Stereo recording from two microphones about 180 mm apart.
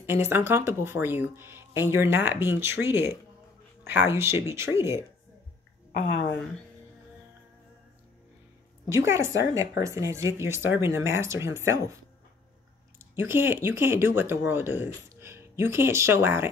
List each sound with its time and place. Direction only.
0.0 s speech: 15° right (ahead or behind)
8.8 s speech: 15° right (ahead or behind)
13.0 s speech: 15° right (ahead or behind)